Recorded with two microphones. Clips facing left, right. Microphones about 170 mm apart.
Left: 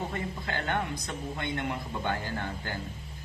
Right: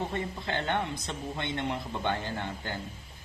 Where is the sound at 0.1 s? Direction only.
25° right (ahead or behind).